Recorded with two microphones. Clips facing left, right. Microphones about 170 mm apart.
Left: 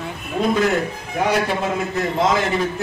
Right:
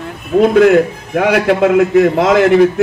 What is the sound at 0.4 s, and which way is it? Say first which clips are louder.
A man's voice: right 11 dB; 70° right (ahead or behind).